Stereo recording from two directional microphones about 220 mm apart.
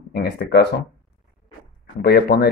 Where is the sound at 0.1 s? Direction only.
50° left (ahead or behind).